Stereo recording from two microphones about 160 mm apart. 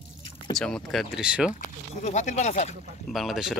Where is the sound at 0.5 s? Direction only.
5° left (ahead or behind).